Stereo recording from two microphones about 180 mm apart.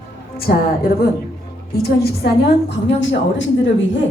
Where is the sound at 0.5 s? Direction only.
55° left (ahead or behind).